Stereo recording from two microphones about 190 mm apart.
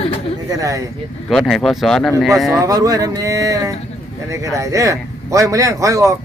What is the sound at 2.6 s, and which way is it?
A man's voice, 20° right (ahead or behind).